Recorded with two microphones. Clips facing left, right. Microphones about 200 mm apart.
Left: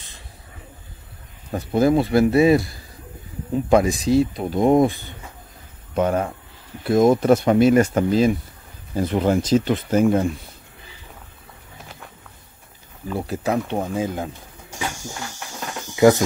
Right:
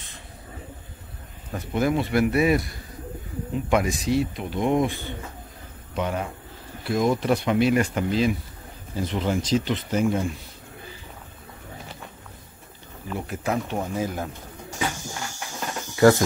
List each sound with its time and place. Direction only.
1.5 s speech: 35° left (ahead or behind)
3.7 s speech: 30° left (ahead or behind)
5.9 s speech: 45° left (ahead or behind)
13.1 s speech: 35° left (ahead or behind)
13.9 s speech: 20° left (ahead or behind)
16.0 s speech: 20° left (ahead or behind)